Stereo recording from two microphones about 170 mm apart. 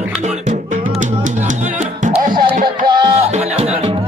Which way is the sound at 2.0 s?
55° right (ahead or behind).